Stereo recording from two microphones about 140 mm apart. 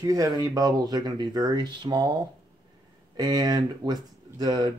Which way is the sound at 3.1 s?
30° right (ahead or behind).